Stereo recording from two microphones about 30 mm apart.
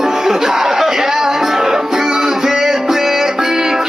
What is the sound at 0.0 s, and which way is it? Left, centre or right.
Music, centre.